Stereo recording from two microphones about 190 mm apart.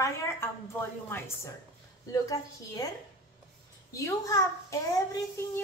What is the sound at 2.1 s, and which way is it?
Speech, 20° left (ahead or behind).